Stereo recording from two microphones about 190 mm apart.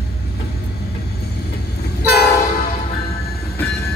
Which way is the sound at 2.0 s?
55° left (ahead or behind).